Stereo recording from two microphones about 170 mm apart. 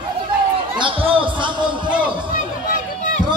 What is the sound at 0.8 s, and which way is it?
Speech, 30° right (ahead or behind).